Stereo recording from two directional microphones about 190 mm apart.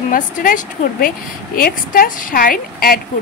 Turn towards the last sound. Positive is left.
turn(degrees=50)  # may be behind; listen again after turning